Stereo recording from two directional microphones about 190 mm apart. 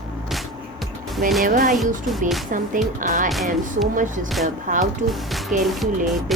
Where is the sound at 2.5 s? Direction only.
45° right (ahead or behind).